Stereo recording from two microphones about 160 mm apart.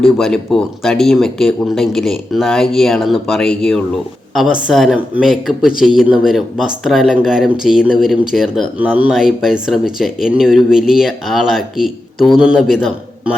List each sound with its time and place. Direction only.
0.2 s speech: centre (ahead or behind)